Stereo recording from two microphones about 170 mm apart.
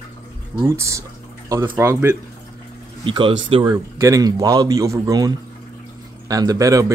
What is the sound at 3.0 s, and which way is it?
Speech, 30° right (ahead or behind).